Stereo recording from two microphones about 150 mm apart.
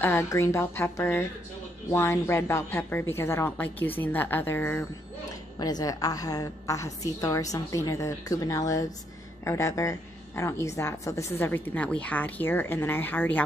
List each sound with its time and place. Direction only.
0.0 s a woman's voice: 15° left (ahead or behind)
5.6 s a woman's voice: 25° left (ahead or behind)